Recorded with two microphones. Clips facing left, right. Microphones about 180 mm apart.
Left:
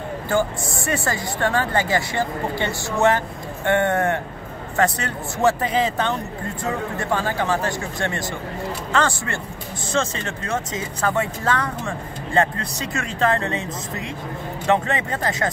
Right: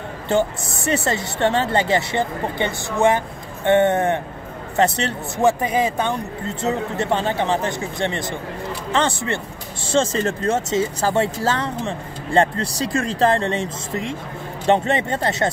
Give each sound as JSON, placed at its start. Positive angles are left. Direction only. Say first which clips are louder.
{"t": 0.3, "sound": "speech", "louder": "right 2 dB", "side_deg": -25}
{"t": 6.6, "sound": "speech", "louder": "right 4 dB", "side_deg": -25}
{"t": 9.9, "sound": "speech", "louder": "right 5 dB", "side_deg": -35}